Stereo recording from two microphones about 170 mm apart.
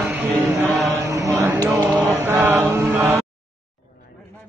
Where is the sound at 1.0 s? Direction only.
20° right (ahead or behind).